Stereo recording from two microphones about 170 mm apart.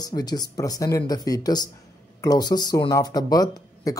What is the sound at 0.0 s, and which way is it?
Speech, 25° left (ahead or behind).